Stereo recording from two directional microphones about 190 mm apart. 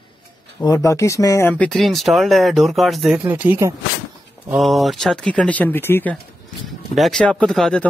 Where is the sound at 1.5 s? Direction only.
5° left (ahead or behind); by 3.7 s 10° right (ahead or behind).